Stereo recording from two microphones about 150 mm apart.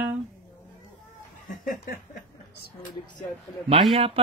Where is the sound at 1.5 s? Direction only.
75° left (ahead or behind).